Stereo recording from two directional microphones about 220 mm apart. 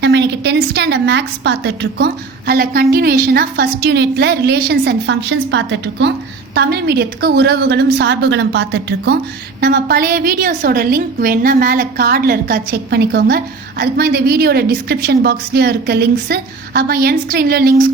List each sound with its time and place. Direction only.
0.0 s a woman's voice: 50° right (ahead or behind)